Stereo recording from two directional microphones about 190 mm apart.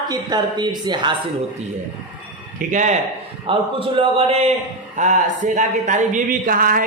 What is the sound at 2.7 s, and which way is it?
Speech, 40° right (ahead or behind).